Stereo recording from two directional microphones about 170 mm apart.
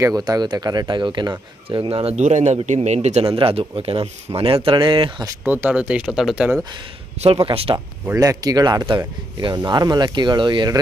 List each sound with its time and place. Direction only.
0.0 s a man's voice: 20° right (ahead or behind)
5.4 s speech: 10° right (ahead or behind)
7.3 s speech: 30° right (ahead or behind)
8.1 s speech: 20° right (ahead or behind)